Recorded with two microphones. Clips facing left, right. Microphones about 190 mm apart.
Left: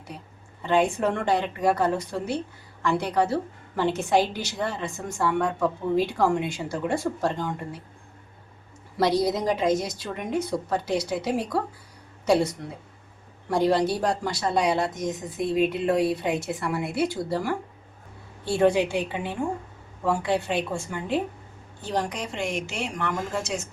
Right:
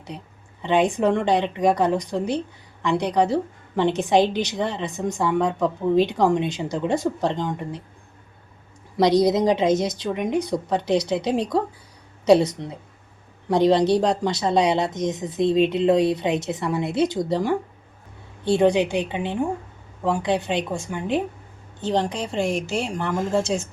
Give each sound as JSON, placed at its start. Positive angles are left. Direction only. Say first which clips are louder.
{"t": 0.6, "sound": "a woman's voice", "louder": "right 3 dB", "side_deg": -15}
{"t": 9.0, "sound": "a woman's voice", "louder": "right 5 dB", "side_deg": -20}